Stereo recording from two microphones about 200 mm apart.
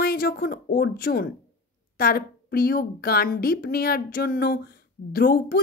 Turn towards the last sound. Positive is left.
turn(degrees=45)  # may be behind; listen again after turning